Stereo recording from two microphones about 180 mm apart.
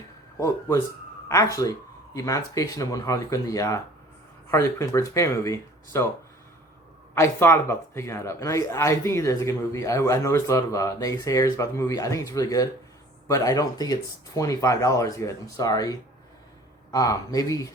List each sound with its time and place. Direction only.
0.3 s speech: 15° left (ahead or behind)
7.1 s speech: 15° left (ahead or behind)